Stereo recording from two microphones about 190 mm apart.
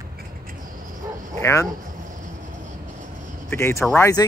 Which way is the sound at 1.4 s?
15° left (ahead or behind).